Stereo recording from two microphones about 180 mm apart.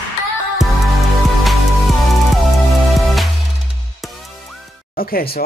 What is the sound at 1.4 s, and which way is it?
Music, centre (ahead or behind).